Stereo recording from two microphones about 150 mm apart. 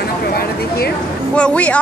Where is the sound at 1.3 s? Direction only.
10° left (ahead or behind).